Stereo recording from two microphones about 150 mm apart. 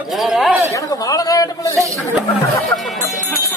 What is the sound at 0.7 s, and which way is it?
A man's voice, 25° left (ahead or behind).